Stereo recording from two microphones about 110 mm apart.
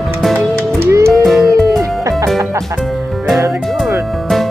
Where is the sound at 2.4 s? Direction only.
30° right (ahead or behind).